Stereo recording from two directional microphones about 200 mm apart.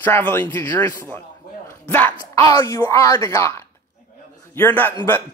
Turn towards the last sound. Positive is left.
turn(degrees=10)  # may be behind; listen again after turning